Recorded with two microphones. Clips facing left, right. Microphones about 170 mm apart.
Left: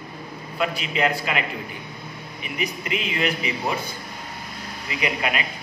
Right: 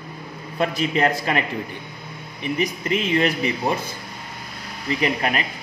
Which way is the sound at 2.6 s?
40° right (ahead or behind).